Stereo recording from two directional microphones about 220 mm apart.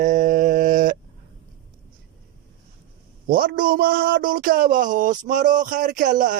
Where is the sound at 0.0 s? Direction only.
35° right (ahead or behind).